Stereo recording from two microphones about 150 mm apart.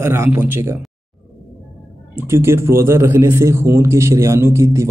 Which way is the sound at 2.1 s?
15° right (ahead or behind).